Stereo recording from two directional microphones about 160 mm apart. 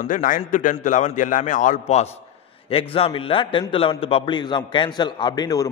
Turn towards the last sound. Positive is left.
turn(degrees=25)  # may be behind; listen again after turning